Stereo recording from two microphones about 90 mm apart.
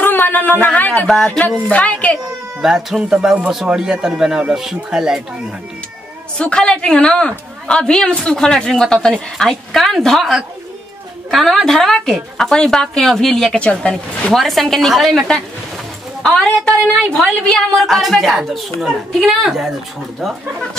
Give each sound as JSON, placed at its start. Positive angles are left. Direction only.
{"t": 0.0, "sound": "a sound", "side_deg": 20}
{"t": 1.0, "sound": "a woman's voice", "side_deg": 5}
{"t": 2.6, "sound": "speech", "side_deg": -5}
{"t": 6.3, "sound": "a woman's voice", "side_deg": 10}
{"t": 14.3, "sound": "a woman's voice", "side_deg": 0}